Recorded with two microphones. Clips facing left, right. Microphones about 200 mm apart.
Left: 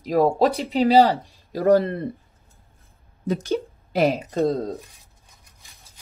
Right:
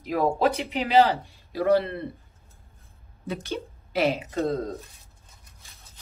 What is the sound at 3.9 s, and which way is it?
Speech, 45° left (ahead or behind).